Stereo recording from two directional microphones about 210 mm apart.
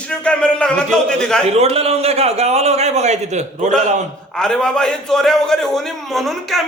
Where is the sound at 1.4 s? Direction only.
30° right (ahead or behind).